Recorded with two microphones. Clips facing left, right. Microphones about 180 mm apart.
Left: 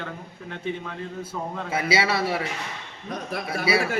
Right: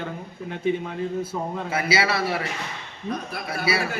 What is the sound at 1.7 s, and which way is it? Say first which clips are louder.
Speech: even; 25° left (ahead or behind).